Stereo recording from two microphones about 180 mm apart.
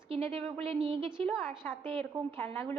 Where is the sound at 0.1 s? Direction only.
35° right (ahead or behind).